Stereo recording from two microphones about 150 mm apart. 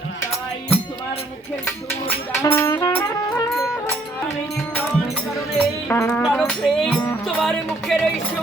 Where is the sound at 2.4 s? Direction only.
15° left (ahead or behind).